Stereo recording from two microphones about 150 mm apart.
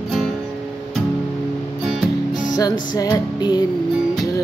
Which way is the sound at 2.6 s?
25° left (ahead or behind).